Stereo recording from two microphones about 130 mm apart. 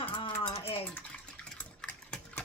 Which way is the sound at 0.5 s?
50° left (ahead or behind).